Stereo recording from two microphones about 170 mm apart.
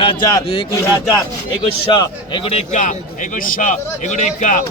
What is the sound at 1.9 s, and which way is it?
A man's voice, 30° left (ahead or behind).